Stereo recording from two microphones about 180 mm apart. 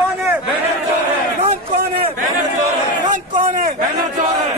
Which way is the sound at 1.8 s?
55° right (ahead or behind).